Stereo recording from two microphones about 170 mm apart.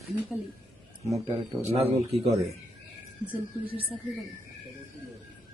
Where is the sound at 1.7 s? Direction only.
35° right (ahead or behind).